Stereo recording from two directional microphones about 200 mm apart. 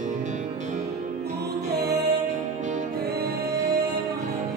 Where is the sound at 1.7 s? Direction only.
55° right (ahead or behind).